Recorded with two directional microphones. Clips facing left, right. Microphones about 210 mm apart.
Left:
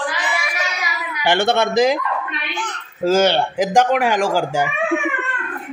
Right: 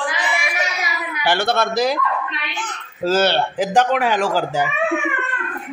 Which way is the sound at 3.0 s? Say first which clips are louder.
Left 2 dB; 10° left (ahead or behind).